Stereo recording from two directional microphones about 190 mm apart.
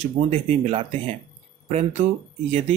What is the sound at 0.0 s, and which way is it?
Speech, 35° right (ahead or behind).